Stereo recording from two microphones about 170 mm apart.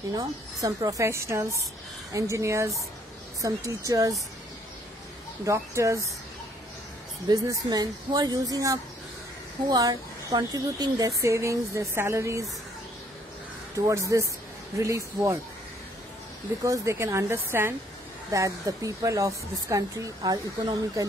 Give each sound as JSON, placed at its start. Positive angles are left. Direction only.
{"t": 0.1, "sound": "a woman's voice", "side_deg": -20}
{"t": 5.4, "sound": "speech", "side_deg": -15}
{"t": 7.2, "sound": "a woman's voice", "side_deg": -20}
{"t": 13.7, "sound": "a woman's voice", "side_deg": -20}
{"t": 16.6, "sound": "a woman's voice", "side_deg": -20}